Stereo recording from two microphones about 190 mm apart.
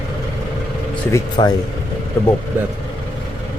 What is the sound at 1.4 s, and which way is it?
Speech, 25° left (ahead or behind).